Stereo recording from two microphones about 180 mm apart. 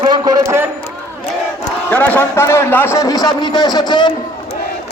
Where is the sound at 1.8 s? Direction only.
10° left (ahead or behind).